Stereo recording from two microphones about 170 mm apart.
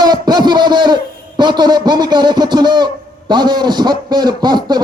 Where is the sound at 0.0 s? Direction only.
25° right (ahead or behind).